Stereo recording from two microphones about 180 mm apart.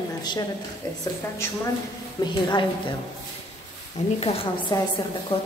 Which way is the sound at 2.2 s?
25° left (ahead or behind).